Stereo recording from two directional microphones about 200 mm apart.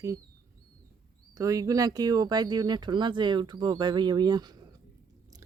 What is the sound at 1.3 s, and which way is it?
Speech, 15° right (ahead or behind).